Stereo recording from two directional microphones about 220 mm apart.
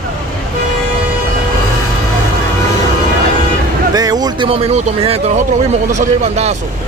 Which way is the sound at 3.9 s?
15° right (ahead or behind).